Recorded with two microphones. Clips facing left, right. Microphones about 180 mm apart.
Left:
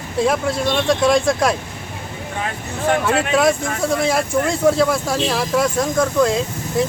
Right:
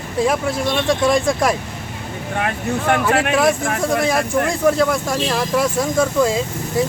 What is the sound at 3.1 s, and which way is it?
Speech, 60° right (ahead or behind).